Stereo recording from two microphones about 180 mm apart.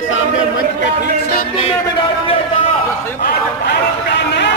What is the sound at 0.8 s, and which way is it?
Speech, 60° left (ahead or behind).